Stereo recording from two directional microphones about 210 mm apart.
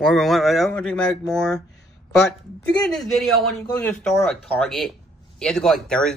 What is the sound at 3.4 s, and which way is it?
A man's voice, 5° left (ahead or behind).